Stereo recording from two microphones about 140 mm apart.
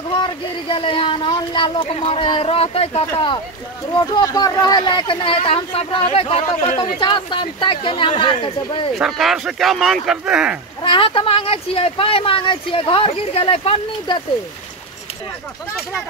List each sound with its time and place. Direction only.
0.2 s speech: 35° left (ahead or behind)
3.9 s speech: 30° left (ahead or behind)
8.9 s speech: centre (ahead or behind)
10.8 s speech: 35° left (ahead or behind)